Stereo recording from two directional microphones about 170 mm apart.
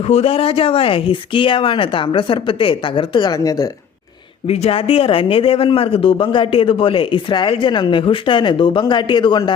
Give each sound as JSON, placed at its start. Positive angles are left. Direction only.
{"t": 0.1, "sound": "speech", "side_deg": 35}
{"t": 4.4, "sound": "a man's voice", "side_deg": 35}